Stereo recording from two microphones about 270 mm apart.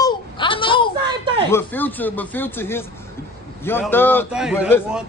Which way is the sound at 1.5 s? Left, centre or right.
Centre.